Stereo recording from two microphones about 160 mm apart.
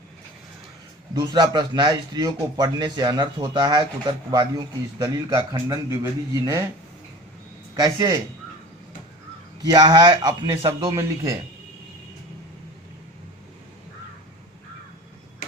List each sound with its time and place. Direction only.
1.2 s speech: 25° right (ahead or behind)
7.8 s speech: 25° right (ahead or behind)
9.6 s speech: 25° right (ahead or behind)